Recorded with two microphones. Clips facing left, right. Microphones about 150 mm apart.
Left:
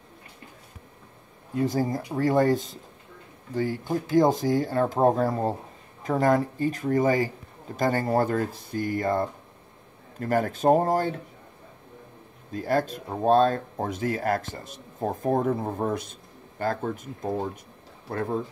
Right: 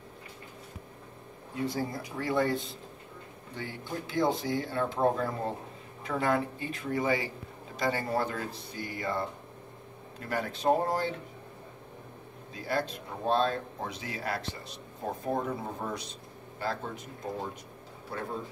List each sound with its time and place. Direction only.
1.7 s speech: 45° left (ahead or behind)
12.5 s speech: 45° left (ahead or behind)